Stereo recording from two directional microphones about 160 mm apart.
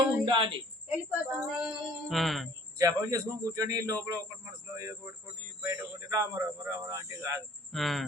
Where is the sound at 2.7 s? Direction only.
20° right (ahead or behind).